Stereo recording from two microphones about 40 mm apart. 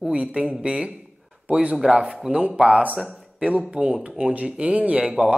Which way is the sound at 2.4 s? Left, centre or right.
Right.